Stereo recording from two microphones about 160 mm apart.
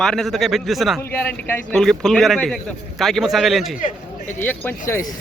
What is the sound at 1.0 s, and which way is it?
A man's voice, 10° left (ahead or behind).